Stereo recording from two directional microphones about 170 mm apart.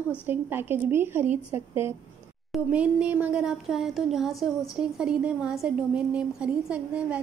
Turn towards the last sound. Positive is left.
turn(degrees=-5)  # may be behind; listen again after turning